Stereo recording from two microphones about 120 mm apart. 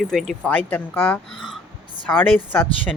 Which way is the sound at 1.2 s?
Centre (ahead or behind).